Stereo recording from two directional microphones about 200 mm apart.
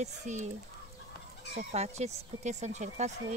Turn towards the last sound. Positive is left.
turn(degrees=-35)  # may be behind; listen again after turning